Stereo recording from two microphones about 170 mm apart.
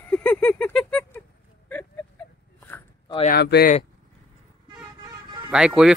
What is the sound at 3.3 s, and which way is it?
Speech, 70° left (ahead or behind).